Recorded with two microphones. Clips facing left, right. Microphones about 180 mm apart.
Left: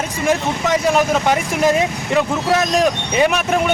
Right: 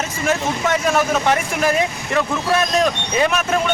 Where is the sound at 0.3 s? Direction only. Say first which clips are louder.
Left 2 dB; 15° left (ahead or behind).